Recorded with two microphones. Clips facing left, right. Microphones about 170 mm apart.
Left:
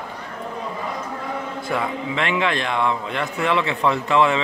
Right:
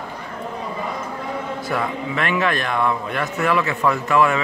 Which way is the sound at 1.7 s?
20° left (ahead or behind).